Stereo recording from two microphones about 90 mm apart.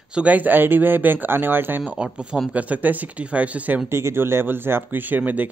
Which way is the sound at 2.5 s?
20° right (ahead or behind).